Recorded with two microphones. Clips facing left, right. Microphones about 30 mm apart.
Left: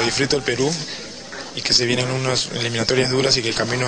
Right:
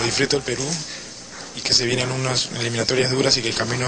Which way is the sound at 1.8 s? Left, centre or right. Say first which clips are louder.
Left 2 dB; centre.